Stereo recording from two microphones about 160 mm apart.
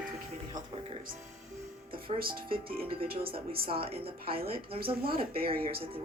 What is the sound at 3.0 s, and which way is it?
Speech, 70° right (ahead or behind).